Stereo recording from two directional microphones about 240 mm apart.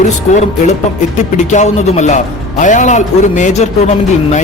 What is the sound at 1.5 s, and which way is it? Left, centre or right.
Speech, left.